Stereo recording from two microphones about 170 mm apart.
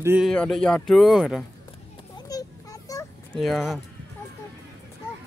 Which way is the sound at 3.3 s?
Centre (ahead or behind).